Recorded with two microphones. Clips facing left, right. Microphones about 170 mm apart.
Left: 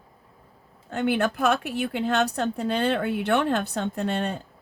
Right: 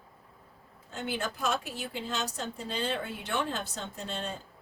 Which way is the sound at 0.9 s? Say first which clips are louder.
Left 11 dB; 65° left (ahead or behind).